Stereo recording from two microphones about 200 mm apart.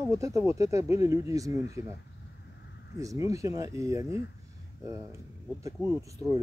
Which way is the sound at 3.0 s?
15° right (ahead or behind).